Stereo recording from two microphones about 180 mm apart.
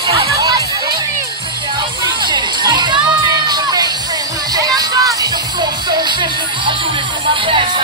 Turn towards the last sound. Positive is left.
turn(degrees=-30)  # may be behind; listen again after turning